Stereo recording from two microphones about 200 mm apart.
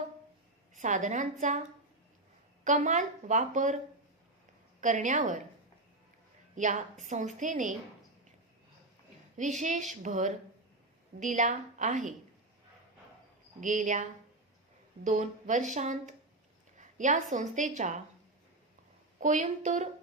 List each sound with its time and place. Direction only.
0.8 s speech: 40° right (ahead or behind)
2.6 s speech: 40° right (ahead or behind)
4.8 s speech: 40° right (ahead or behind)
6.6 s speech: 40° right (ahead or behind)
9.4 s speech: 35° right (ahead or behind)
13.6 s a woman's voice: 40° right (ahead or behind)
19.2 s speech: 35° right (ahead or behind)